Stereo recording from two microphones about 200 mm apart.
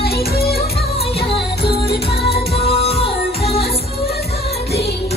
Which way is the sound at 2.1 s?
30° left (ahead or behind).